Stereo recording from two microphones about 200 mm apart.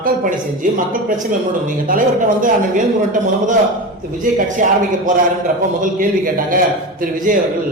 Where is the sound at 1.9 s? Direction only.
45° right (ahead or behind).